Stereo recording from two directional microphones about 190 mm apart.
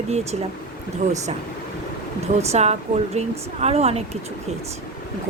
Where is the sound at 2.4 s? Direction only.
35° right (ahead or behind).